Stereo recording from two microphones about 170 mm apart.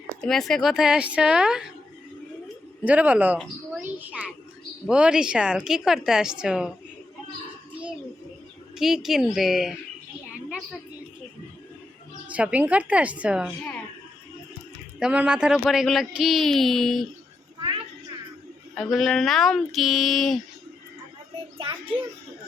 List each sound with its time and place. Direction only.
0.2 s speech: centre (ahead or behind)
2.8 s a woman's voice: 10° right (ahead or behind)
8.7 s speech: centre (ahead or behind)
12.3 s a woman's voice: 10° right (ahead or behind)
14.9 s speech: 5° right (ahead or behind)
18.7 s speech: centre (ahead or behind)
21.6 s a child's voice: 30° right (ahead or behind)